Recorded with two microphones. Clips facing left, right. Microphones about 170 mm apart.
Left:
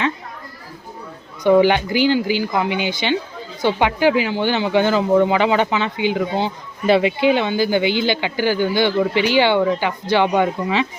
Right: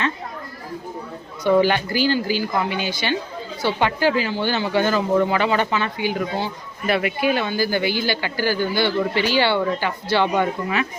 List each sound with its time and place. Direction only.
1.5 s speech: 15° left (ahead or behind)